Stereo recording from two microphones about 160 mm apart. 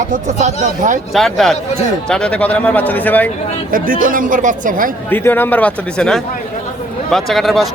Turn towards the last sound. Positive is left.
turn(degrees=0)  # may be behind; listen again after turning